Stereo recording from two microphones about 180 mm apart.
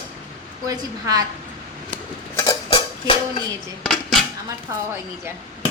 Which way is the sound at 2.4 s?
20° left (ahead or behind).